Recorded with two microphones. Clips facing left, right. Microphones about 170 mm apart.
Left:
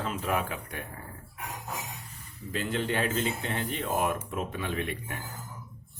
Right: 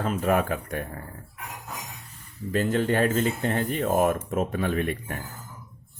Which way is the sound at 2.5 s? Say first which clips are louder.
Right 7 dB; 45° right (ahead or behind).